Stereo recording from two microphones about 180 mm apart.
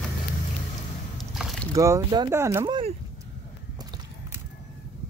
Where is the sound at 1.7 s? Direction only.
20° right (ahead or behind).